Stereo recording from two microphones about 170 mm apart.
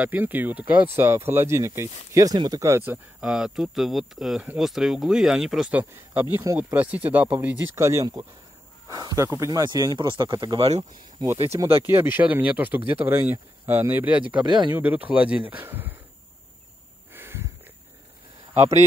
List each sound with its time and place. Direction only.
0.0 s speech: 10° right (ahead or behind)
11.3 s speech: 35° right (ahead or behind)
11.9 s speech: 10° right (ahead or behind)
14.4 s speech: 25° right (ahead or behind)
14.7 s speech: 10° right (ahead or behind)
17.1 s snort: 15° right (ahead or behind)
18.6 s speech: 40° right (ahead or behind)